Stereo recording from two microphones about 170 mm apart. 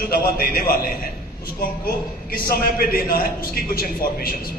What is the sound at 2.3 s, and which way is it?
A man's voice, 60° left (ahead or behind).